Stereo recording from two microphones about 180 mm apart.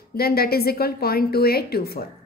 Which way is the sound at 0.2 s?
60° left (ahead or behind).